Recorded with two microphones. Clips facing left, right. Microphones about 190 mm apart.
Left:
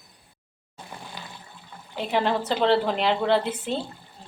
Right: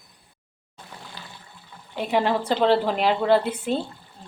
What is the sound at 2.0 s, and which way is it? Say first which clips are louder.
Speech: right 2 dB; 10° right (ahead or behind).